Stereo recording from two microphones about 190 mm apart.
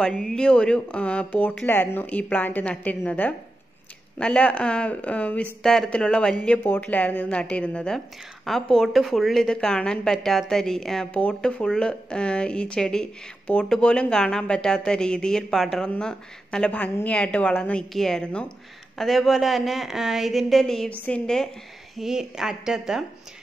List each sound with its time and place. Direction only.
0.0 s a woman's voice: 5° left (ahead or behind)